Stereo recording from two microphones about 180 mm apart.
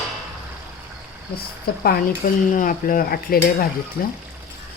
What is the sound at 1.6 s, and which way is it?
Speech, 55° left (ahead or behind).